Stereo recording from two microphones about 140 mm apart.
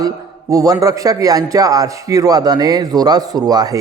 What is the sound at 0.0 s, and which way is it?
A man's voice, 25° right (ahead or behind).